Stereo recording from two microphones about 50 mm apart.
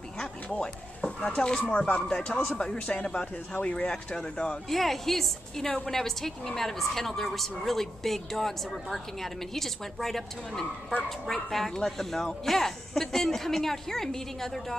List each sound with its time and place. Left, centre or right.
0.2 s a woman's voice: centre